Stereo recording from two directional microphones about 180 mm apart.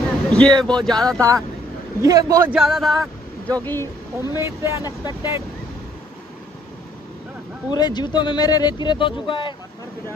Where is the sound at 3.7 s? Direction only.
15° left (ahead or behind).